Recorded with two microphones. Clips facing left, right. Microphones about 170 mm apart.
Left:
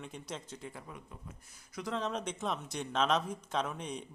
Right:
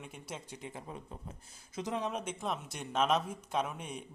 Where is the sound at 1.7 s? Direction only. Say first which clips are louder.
Even; 20° right (ahead or behind).